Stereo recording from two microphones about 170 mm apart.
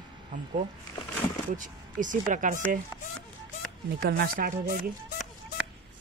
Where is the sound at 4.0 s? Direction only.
65° right (ahead or behind).